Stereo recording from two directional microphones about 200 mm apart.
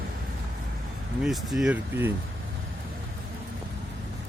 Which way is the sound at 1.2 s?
Centre (ahead or behind).